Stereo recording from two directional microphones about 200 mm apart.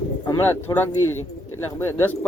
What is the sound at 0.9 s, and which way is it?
Speech, 90° left.